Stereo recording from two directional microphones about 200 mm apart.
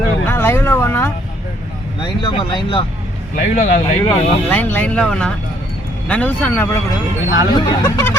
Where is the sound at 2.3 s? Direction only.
25° left (ahead or behind).